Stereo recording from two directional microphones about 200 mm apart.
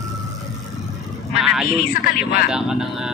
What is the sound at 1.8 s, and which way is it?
Speech, 45° left (ahead or behind).